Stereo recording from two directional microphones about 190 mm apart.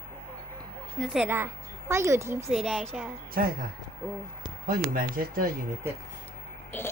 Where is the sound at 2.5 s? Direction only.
Centre (ahead or behind).